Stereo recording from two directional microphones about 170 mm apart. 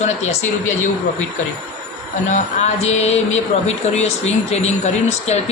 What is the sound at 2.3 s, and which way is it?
Speech, 40° left (ahead or behind).